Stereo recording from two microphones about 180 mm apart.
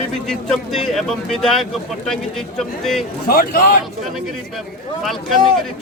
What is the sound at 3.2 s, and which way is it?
Speech, 55° left (ahead or behind).